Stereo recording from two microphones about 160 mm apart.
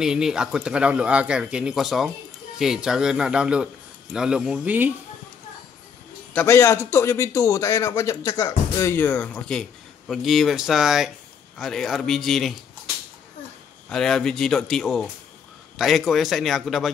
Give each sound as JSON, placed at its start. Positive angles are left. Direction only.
{"t": 0.0, "sound": "a man's voice", "side_deg": -5}
{"t": 6.3, "sound": "a man's voice", "side_deg": 15}
{"t": 13.8, "sound": "a man's voice", "side_deg": 5}